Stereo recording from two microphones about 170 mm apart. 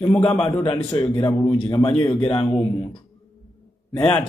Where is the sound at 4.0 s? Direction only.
10° left (ahead or behind).